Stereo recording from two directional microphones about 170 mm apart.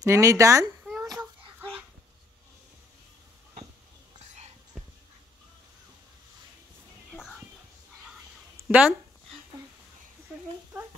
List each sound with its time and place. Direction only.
0.0 s speech: 20° right (ahead or behind)
4.2 s whispering: 40° right (ahead or behind)
4.7 s dog: centre (ahead or behind)
8.6 s speech: 5° right (ahead or behind)